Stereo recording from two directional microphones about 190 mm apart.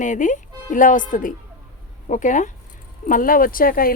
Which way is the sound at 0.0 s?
40° left (ahead or behind).